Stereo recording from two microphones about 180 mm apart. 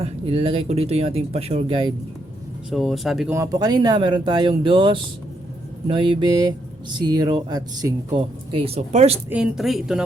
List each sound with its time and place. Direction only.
0.0 s speech: 30° right (ahead or behind)
2.6 s speech: centre (ahead or behind)
3.3 s speech: 20° right (ahead or behind); by 9.1 s 35° right (ahead or behind)
9.3 s speech: 5° right (ahead or behind)